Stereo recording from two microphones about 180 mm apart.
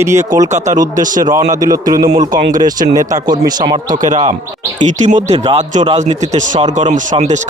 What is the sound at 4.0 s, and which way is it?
Speech, 45° right (ahead or behind).